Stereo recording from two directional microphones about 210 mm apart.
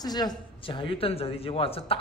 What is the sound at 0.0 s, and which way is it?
A man's voice, 20° left (ahead or behind).